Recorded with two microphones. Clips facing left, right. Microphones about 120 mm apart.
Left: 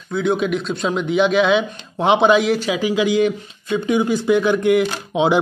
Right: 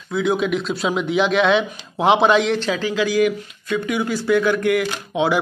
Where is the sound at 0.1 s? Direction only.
Centre (ahead or behind).